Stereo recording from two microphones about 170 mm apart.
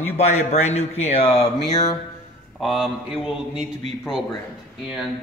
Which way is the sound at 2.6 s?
Centre (ahead or behind).